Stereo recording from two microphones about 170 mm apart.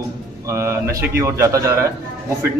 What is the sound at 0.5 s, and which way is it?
Speech, 15° right (ahead or behind).